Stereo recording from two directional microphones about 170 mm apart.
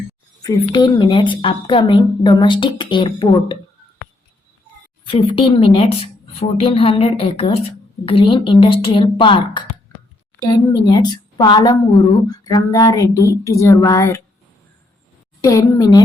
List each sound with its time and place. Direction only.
0.4 s a woman's voice: 25° left (ahead or behind)
5.0 s a woman's voice: 30° left (ahead or behind)
15.4 s a woman's voice: 20° left (ahead or behind)